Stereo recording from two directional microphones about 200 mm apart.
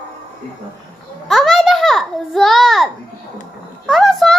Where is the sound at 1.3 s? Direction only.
Centre (ahead or behind).